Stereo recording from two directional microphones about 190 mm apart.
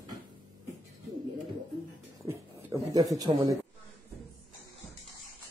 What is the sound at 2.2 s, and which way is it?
Speech, 20° right (ahead or behind).